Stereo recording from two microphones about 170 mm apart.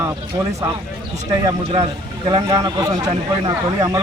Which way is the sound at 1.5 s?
30° right (ahead or behind).